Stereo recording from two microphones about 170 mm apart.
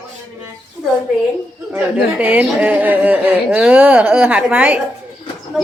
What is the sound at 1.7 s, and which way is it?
A woman's voice, 10° right (ahead or behind).